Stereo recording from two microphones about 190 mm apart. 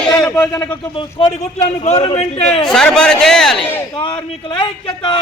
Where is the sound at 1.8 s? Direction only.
35° left (ahead or behind).